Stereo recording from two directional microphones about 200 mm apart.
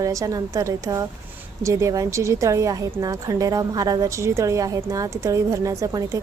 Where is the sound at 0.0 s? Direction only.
15° right (ahead or behind).